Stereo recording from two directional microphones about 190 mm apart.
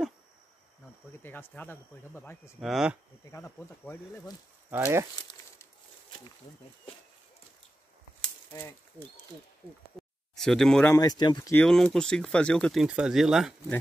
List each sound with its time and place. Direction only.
1.2 s speech: 10° left (ahead or behind)
2.6 s speech: centre (ahead or behind)
3.3 s speech: 15° left (ahead or behind)
4.6 s speech: 10° right (ahead or behind)
8.2 s speech: 15° left (ahead or behind)
10.3 s speech: centre (ahead or behind)
10.9 s speech: 20° left (ahead or behind)
11.5 s speech: 5° left (ahead or behind)